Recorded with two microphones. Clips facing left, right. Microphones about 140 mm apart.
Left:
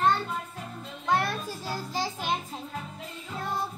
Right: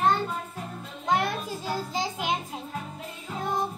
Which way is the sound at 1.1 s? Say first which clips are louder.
Right 1 dB; 15° right (ahead or behind).